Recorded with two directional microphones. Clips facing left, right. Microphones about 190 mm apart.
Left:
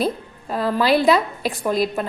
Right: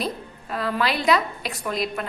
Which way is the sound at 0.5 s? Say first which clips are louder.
Left 7 dB; 35° left (ahead or behind).